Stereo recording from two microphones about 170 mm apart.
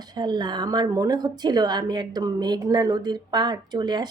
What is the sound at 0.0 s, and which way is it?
A woman's voice, 25° right (ahead or behind).